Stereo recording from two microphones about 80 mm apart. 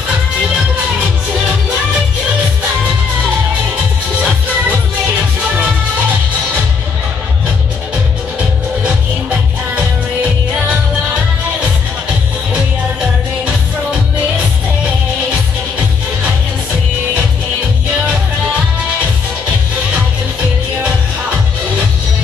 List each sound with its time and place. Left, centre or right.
4.2 s music: centre